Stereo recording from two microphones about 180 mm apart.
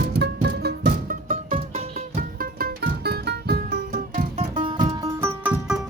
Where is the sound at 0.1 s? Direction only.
65° right (ahead or behind).